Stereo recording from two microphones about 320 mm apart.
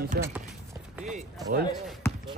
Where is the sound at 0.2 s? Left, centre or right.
Right.